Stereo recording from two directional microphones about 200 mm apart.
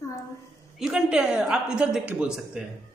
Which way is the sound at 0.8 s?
5° right (ahead or behind).